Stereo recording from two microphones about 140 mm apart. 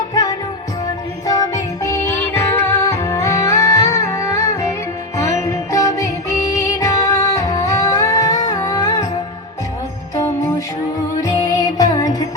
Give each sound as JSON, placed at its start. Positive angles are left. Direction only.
{"t": 0.1, "sound": "music", "side_deg": 25}
{"t": 11.2, "sound": "music", "side_deg": 25}